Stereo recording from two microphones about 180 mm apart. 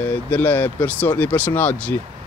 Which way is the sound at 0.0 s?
10° left (ahead or behind).